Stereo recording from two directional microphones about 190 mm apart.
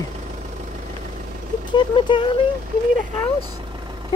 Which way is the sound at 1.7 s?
25° left (ahead or behind).